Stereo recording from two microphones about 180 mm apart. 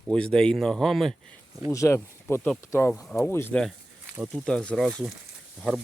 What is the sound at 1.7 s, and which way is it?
Speech, 15° left (ahead or behind).